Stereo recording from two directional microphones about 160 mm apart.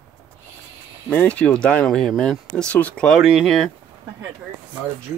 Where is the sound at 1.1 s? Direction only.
10° left (ahead or behind).